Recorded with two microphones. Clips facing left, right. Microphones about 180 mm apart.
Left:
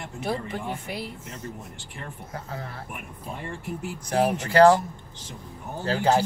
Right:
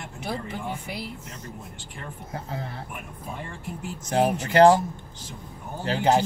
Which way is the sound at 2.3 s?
25° right (ahead or behind).